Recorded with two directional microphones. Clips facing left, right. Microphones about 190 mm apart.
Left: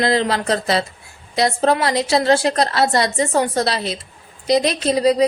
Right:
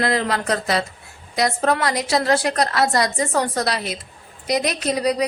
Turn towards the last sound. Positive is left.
turn(degrees=25)  # may be behind; listen again after turning